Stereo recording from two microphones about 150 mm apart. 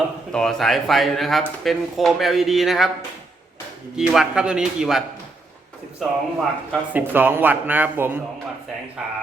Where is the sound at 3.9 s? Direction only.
5° right (ahead or behind).